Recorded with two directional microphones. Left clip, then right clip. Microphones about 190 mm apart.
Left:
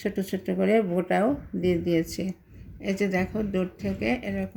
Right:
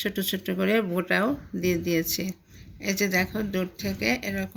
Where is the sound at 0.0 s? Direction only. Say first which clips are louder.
Right 1 dB; 5° left (ahead or behind).